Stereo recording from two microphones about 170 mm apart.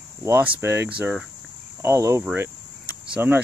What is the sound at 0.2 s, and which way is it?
Speech, 15° right (ahead or behind).